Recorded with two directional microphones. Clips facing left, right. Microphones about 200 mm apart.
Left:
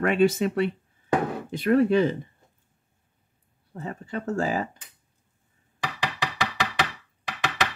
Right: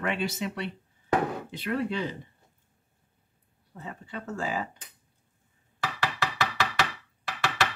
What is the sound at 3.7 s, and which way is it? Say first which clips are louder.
Speech: left 7 dB; 45° left (ahead or behind).